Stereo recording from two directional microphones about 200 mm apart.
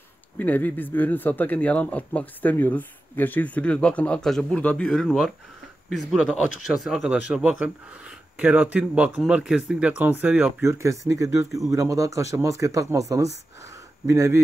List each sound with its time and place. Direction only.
0.4 s speech: 10° left (ahead or behind)
6.8 s a man's voice: centre (ahead or behind)
13.3 s speech: 60° left (ahead or behind)
14.0 s speech: 15° right (ahead or behind)